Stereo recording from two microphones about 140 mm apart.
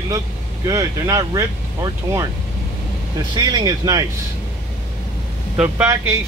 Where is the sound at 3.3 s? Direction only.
30° right (ahead or behind).